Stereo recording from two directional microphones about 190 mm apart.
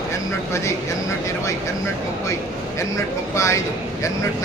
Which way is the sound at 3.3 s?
15° left (ahead or behind).